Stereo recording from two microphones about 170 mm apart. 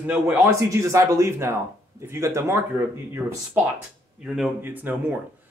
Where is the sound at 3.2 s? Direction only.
5° right (ahead or behind).